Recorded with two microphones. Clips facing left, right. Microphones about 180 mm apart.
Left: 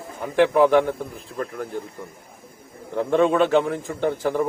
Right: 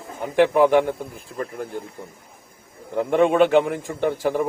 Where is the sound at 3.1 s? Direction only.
15° right (ahead or behind).